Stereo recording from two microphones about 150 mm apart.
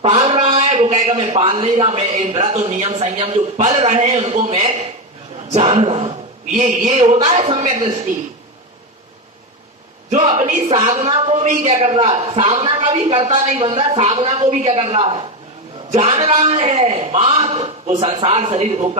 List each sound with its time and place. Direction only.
0.3 s a sound: 50° right (ahead or behind)
1.4 s a man's voice: 40° right (ahead or behind)
3.2 s a man's voice: 40° right (ahead or behind)
3.8 s a man's voice: 50° right (ahead or behind)
6.6 s a man's voice: 60° right (ahead or behind)
10.1 s a man's voice: 50° right (ahead or behind)
10.9 s a man's voice: 40° right (ahead or behind)